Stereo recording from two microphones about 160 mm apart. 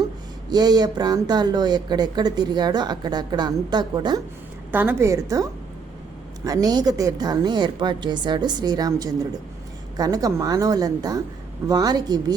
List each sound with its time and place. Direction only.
0.5 s speech: 25° right (ahead or behind)
4.7 s a woman's voice: 10° right (ahead or behind)